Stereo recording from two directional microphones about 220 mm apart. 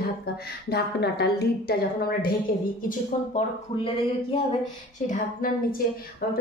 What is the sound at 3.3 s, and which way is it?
A woman's voice, 30° left (ahead or behind).